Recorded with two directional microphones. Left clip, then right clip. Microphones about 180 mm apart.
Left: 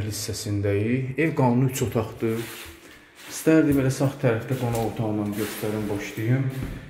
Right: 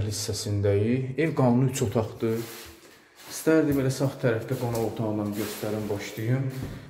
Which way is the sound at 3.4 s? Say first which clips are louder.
Left 3 dB; 15° left (ahead or behind).